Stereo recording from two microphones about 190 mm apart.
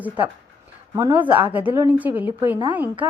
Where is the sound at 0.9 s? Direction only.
15° right (ahead or behind).